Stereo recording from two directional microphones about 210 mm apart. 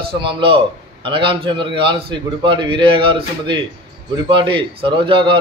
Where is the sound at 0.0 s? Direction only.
25° right (ahead or behind).